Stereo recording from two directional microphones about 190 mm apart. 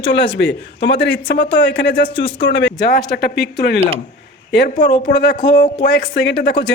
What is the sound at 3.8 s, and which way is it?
Speech, 30° right (ahead or behind).